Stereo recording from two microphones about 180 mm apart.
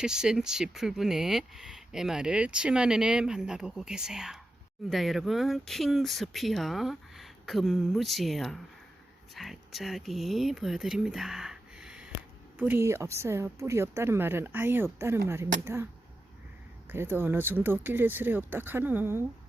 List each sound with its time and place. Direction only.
0.0 s speech: 5° right (ahead or behind)
16.9 s speech: 10° right (ahead or behind)